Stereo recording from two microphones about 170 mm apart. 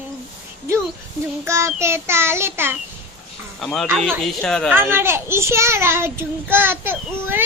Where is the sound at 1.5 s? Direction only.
15° right (ahead or behind).